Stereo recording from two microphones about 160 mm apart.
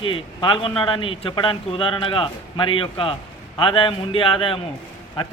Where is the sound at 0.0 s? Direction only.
30° left (ahead or behind).